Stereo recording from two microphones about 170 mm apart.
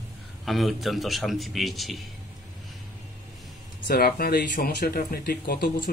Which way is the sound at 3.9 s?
60° left (ahead or behind).